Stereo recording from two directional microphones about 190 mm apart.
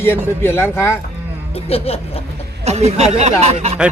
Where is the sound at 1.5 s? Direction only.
30° left (ahead or behind).